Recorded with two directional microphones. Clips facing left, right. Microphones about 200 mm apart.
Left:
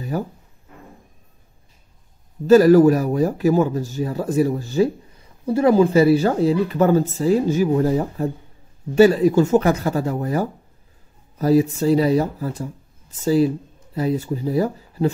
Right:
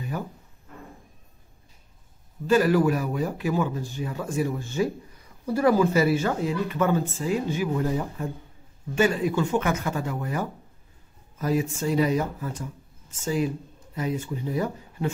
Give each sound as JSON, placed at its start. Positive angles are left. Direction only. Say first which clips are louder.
{"t": 0.1, "sound": "speech", "louder": "left 8 dB", "side_deg": 40}
{"t": 2.4, "sound": "speech", "louder": "left 9 dB", "side_deg": 40}